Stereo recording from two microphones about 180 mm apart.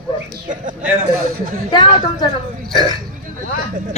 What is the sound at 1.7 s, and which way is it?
Speech, 25° left (ahead or behind).